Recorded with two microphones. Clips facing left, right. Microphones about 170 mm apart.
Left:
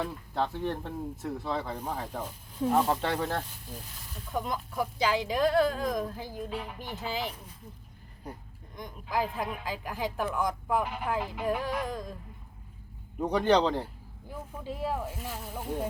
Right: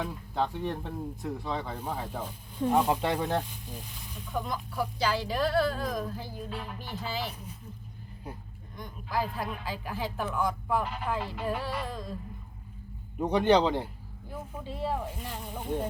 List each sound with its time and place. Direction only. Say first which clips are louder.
0.0 s speech: even; centre (ahead or behind)
2.0 s speech: even; 10° right (ahead or behind)
2.6 s speech: even; 5° left (ahead or behind)
2.8 s speech: right 1 dB; 10° right (ahead or behind)
4.1 s speech: left 1 dB; 5° left (ahead or behind)
5.1 s speech: left 3 dB; 15° left (ahead or behind)
9.1 s speech: left 1 dB; 15° left (ahead or behind)
13.1 s speech: right 1 dB; 10° right (ahead or behind)
14.6 s speech: even; 10° left (ahead or behind)